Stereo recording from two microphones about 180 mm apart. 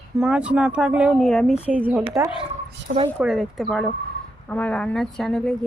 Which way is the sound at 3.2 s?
Centre (ahead or behind).